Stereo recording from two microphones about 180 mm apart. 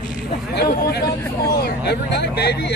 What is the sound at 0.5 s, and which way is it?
Speech, 60° left (ahead or behind).